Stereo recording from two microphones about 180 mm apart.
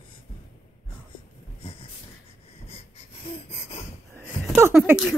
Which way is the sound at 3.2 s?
35° left (ahead or behind).